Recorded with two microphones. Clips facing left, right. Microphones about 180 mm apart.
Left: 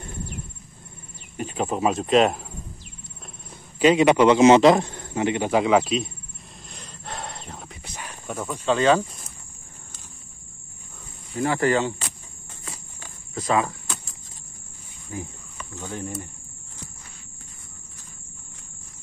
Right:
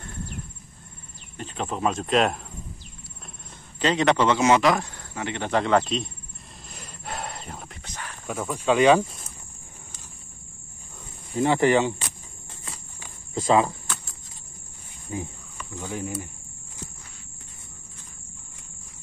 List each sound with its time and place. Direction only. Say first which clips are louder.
1.3 s a man's voice: left 5 dB; 10° left (ahead or behind)
3.8 s a man's voice: left 5 dB; 10° left (ahead or behind)
6.7 s a sound: right 1 dB; 5° right (ahead or behind)
7.8 s a sound: even; 10° left (ahead or behind)
8.3 s speech: right 1 dB; 5° right (ahead or behind)
11.3 s speech: right 2 dB; 20° right (ahead or behind)
13.3 s speech: right 3 dB; 25° right (ahead or behind)
15.1 s speech: right 2 dB; 25° right (ahead or behind)
15.8 s speech: right 1 dB; 5° right (ahead or behind)